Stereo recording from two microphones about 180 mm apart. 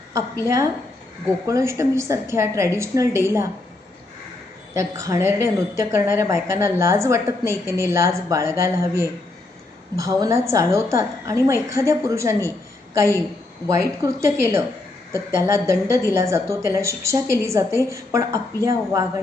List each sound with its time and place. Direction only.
0.4 s a woman's voice: 15° right (ahead or behind)
4.7 s a woman's voice: 15° right (ahead or behind)